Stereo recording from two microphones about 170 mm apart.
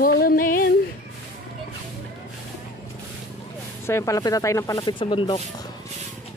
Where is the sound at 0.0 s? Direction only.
60° left (ahead or behind).